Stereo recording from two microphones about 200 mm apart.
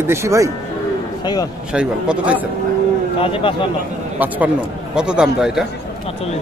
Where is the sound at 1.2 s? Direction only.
20° left (ahead or behind).